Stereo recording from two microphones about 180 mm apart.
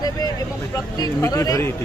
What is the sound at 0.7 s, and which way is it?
Speech, 15° left (ahead or behind).